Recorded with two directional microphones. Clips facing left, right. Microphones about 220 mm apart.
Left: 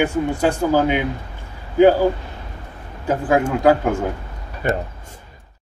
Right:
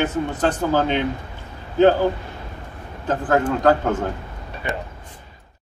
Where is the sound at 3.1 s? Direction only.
10° left (ahead or behind).